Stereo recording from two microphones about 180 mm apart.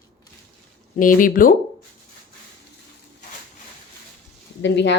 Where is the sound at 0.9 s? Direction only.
50° left (ahead or behind).